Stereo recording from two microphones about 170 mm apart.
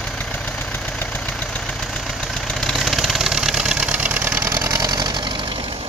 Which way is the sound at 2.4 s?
Centre (ahead or behind).